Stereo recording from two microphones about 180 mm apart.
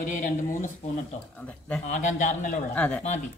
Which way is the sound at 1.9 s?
45° left (ahead or behind).